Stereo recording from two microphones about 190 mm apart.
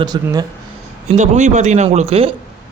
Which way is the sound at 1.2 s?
40° right (ahead or behind).